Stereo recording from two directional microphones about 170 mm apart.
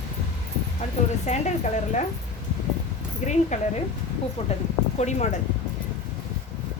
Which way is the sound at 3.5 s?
40° left (ahead or behind).